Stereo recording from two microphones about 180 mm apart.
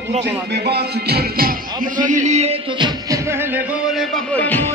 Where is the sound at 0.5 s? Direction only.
65° right (ahead or behind); by 3.6 s 15° right (ahead or behind).